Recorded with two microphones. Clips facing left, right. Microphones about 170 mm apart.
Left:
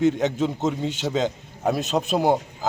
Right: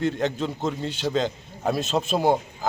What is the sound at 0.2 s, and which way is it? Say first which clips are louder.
A man's voice: left 3 dB; 20° left (ahead or behind).